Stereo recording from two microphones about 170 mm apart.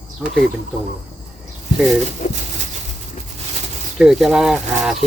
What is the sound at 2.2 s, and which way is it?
Speech, 50° left (ahead or behind).